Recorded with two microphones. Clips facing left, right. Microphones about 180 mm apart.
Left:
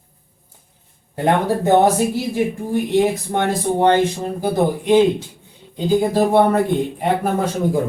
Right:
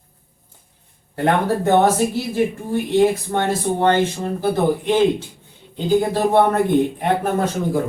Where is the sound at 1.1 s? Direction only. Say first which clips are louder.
Left 1 dB; 15° left (ahead or behind).